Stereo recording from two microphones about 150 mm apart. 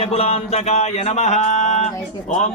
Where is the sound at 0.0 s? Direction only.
45° left (ahead or behind).